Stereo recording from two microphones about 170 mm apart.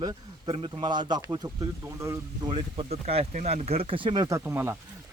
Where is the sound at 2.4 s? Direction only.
30° right (ahead or behind).